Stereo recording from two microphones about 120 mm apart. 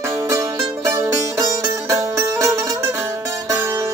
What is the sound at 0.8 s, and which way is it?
Music, 25° right (ahead or behind).